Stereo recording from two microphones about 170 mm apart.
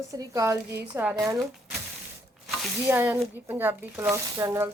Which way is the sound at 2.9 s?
10° right (ahead or behind).